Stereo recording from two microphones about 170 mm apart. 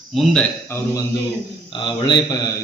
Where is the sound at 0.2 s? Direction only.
Centre (ahead or behind).